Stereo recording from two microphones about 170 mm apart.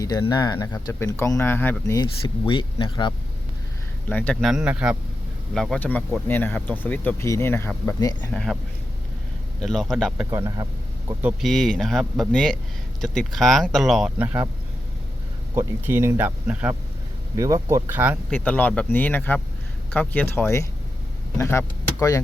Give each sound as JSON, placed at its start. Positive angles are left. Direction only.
{"t": 0.0, "sound": "speech", "side_deg": 20}
{"t": 2.5, "sound": "speech", "side_deg": 30}
{"t": 4.1, "sound": "speech", "side_deg": 10}
{"t": 9.6, "sound": "speech", "side_deg": 0}
{"t": 10.2, "sound": "speech", "side_deg": -20}
{"t": 11.2, "sound": "speech", "side_deg": -5}
{"t": 14.3, "sound": "speech", "side_deg": -15}
{"t": 15.5, "sound": "speech", "side_deg": -15}
{"t": 18.3, "sound": "speech", "side_deg": 10}